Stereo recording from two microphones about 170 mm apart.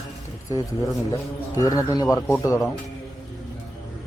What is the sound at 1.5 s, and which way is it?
Speech, 20° left (ahead or behind).